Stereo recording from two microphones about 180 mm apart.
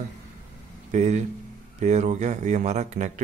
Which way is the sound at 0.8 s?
40° right (ahead or behind).